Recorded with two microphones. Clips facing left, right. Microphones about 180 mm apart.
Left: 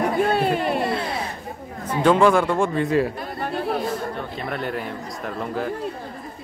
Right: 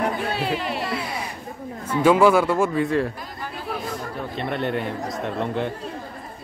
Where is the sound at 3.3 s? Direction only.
60° left (ahead or behind).